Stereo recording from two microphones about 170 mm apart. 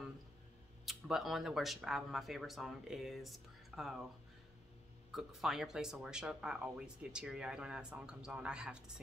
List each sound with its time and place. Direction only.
0.8 s speech: centre (ahead or behind)
5.1 s speech: centre (ahead or behind)